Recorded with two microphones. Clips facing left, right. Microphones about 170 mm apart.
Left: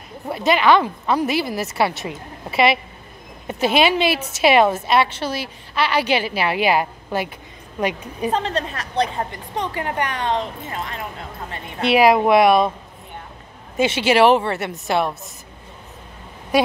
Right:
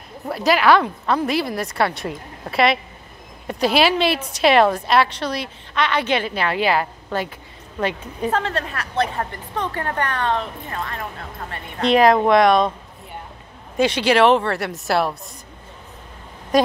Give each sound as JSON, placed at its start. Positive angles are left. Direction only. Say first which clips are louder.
{"t": 0.3, "sound": "a woman's voice", "louder": "even", "side_deg": 0}
{"t": 11.8, "sound": "a woman's voice", "louder": "even", "side_deg": 10}
{"t": 13.7, "sound": "a woman's voice", "louder": "even", "side_deg": 5}
{"t": 16.5, "sound": "speech", "louder": "right 1 dB", "side_deg": 5}